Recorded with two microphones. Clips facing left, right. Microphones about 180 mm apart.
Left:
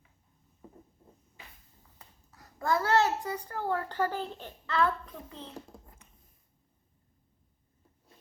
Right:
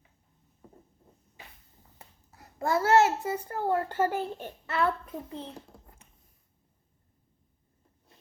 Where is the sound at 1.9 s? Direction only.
25° right (ahead or behind).